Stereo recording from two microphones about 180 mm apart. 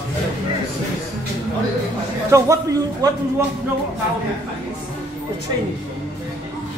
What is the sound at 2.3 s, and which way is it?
Speech, 15° right (ahead or behind).